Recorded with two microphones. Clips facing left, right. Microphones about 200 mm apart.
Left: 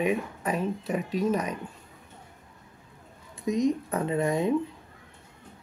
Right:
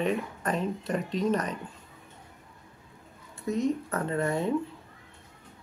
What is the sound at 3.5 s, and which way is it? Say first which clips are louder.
Speech: left 2 dB; 15° left (ahead or behind).